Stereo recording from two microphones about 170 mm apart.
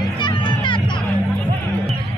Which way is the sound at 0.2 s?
30° left (ahead or behind).